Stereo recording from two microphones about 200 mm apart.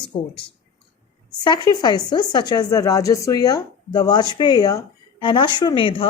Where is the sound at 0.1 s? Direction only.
30° left (ahead or behind).